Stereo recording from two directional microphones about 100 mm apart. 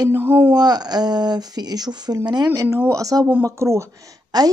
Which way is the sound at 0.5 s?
40° right (ahead or behind).